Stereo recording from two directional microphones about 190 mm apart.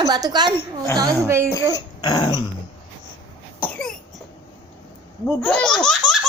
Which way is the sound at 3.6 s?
5° left (ahead or behind).